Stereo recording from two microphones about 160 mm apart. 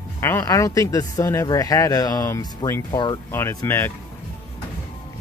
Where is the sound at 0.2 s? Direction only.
20° left (ahead or behind).